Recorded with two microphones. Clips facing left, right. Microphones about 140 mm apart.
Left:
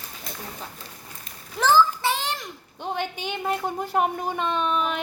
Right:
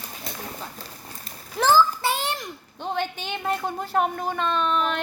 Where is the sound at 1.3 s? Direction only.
35° right (ahead or behind).